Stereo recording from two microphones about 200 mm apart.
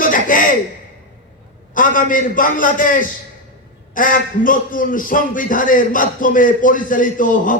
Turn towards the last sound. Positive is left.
turn(degrees=40)  # may be behind; listen again after turning